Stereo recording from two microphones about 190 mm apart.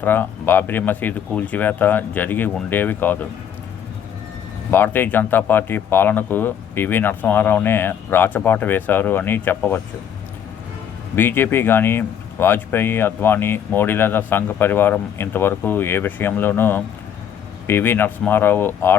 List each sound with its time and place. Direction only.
0.0 s speech: 10° left (ahead or behind)
4.7 s speech: 10° left (ahead or behind)
11.1 s speech: 10° left (ahead or behind)